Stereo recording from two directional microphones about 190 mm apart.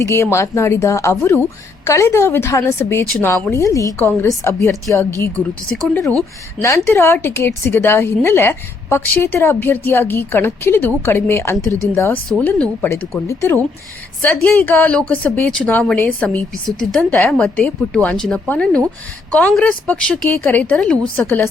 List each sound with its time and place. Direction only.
0.0 s speech: 15° left (ahead or behind)